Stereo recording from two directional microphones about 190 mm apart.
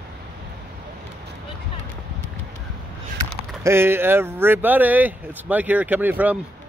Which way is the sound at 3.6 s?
10° right (ahead or behind).